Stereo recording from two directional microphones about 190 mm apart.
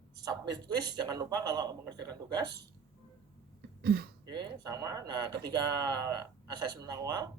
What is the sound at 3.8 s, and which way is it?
Speech, 55° right (ahead or behind).